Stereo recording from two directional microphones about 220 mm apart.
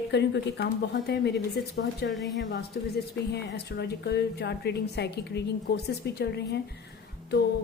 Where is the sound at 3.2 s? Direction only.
5° left (ahead or behind).